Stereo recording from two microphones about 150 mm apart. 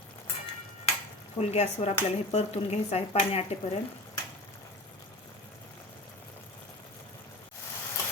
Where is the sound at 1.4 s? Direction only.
45° left (ahead or behind).